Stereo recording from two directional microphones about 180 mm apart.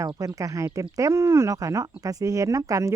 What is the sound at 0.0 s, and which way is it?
Speech, 20° right (ahead or behind).